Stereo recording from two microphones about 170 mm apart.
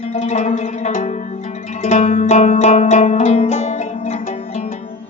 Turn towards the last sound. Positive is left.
turn(degrees=45)  # may be behind; listen again after turning